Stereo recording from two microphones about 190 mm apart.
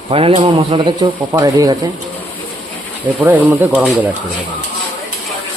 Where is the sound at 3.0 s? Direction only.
10° right (ahead or behind).